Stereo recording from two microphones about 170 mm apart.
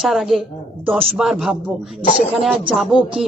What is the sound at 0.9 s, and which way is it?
Speech, 35° right (ahead or behind).